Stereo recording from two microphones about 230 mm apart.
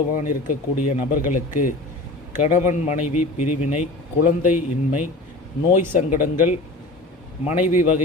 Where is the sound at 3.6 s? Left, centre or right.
Left.